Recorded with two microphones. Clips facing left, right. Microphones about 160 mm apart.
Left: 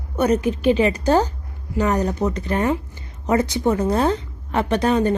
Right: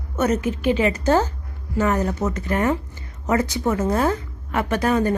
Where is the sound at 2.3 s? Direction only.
25° left (ahead or behind).